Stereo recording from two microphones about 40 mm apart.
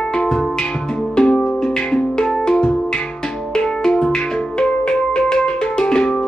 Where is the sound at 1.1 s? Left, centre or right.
Left.